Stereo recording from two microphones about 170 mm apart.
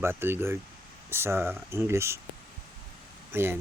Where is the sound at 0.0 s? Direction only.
15° right (ahead or behind).